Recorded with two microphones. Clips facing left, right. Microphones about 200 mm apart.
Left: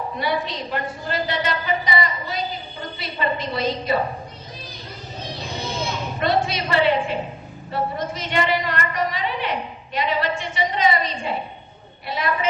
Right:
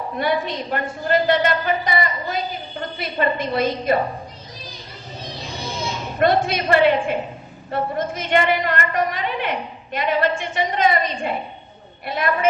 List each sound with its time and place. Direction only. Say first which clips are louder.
0.2 s a woman's voice: right 4 dB; 55° right (ahead or behind)
6.1 s a woman's voice: right 4 dB; 55° right (ahead or behind)